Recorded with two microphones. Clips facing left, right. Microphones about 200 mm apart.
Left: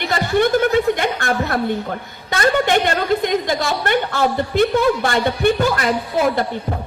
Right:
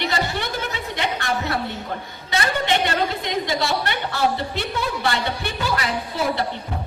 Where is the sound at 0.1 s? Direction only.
50° left (ahead or behind).